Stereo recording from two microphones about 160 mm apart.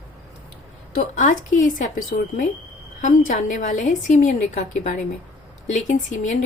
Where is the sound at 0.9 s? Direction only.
65° left (ahead or behind).